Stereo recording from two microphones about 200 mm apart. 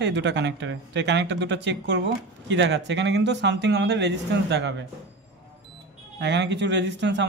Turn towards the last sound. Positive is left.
turn(degrees=-60)  # may be behind; listen again after turning